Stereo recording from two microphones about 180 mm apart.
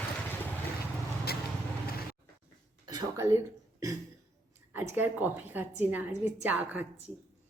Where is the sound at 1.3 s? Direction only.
60° left (ahead or behind).